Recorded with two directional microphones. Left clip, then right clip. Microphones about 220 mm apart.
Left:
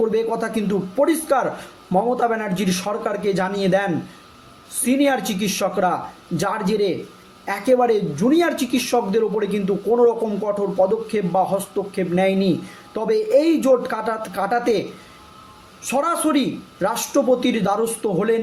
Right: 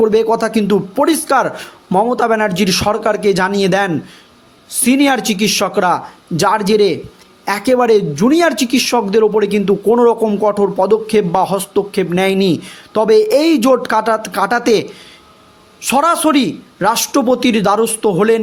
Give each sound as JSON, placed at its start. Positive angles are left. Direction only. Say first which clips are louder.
{"t": 0.0, "sound": "speech", "louder": "right 8 dB", "side_deg": -40}
{"t": 4.9, "sound": "speech", "louder": "right 6 dB", "side_deg": -45}